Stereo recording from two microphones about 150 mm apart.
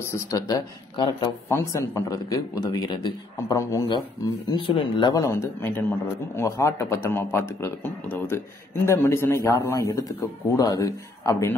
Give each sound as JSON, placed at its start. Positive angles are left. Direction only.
{"t": 0.3, "sound": "speech", "side_deg": 25}
{"t": 1.5, "sound": "speech", "side_deg": 20}
{"t": 4.5, "sound": "speech", "side_deg": 35}